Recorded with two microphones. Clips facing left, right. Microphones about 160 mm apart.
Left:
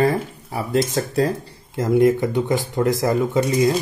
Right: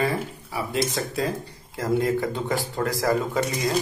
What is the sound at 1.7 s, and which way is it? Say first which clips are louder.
Speech: left 7 dB; 20° left (ahead or behind).